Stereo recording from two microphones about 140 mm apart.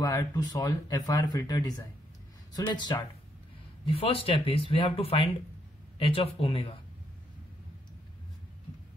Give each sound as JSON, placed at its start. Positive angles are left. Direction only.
{"t": 0.0, "sound": "speech", "side_deg": 25}
{"t": 2.7, "sound": "speech", "side_deg": 30}
{"t": 3.8, "sound": "speech", "side_deg": 40}